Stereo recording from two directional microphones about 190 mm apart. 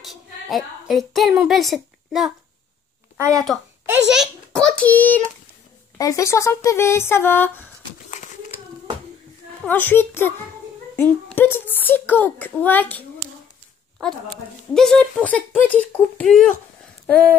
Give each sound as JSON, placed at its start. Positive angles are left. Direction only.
{"t": 0.0, "sound": "a woman's voice", "side_deg": 0}
{"t": 3.2, "sound": "speech", "side_deg": -15}
{"t": 3.9, "sound": "a child's voice", "side_deg": 0}
{"t": 9.6, "sound": "a child's voice", "side_deg": 10}
{"t": 14.7, "sound": "a child's voice", "side_deg": 0}